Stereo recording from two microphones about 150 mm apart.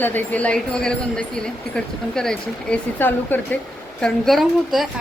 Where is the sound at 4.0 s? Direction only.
Centre (ahead or behind).